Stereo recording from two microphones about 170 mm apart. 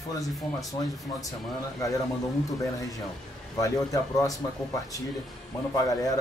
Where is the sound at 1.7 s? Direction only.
20° left (ahead or behind).